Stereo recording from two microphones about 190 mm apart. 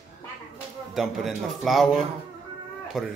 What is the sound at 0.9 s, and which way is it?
Speech, centre (ahead or behind).